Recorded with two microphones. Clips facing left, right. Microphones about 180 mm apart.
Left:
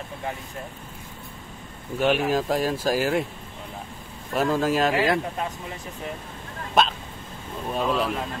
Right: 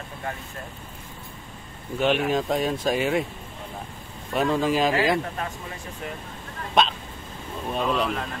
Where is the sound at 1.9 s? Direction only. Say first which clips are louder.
Left 1 dB; centre (ahead or behind).